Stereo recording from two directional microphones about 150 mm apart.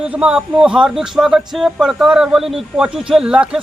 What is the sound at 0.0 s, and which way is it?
Speech, 5° right (ahead or behind).